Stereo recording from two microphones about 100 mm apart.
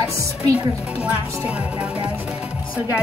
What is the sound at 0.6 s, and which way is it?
Speech, 10° right (ahead or behind).